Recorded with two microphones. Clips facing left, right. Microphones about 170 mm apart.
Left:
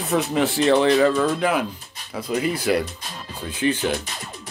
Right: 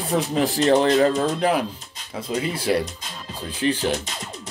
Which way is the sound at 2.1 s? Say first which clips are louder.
Left 2 dB; 25° right (ahead or behind).